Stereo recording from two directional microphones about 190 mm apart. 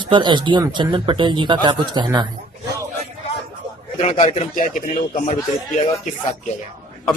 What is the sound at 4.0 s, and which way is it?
Speech, 35° left (ahead or behind).